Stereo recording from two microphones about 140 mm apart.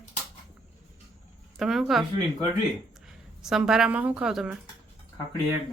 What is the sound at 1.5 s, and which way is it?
Speech, 5° right (ahead or behind).